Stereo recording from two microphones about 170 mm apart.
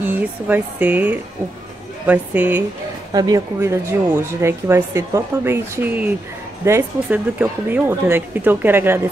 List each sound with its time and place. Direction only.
0.0 s speech: 10° right (ahead or behind)
3.1 s speech: 20° right (ahead or behind)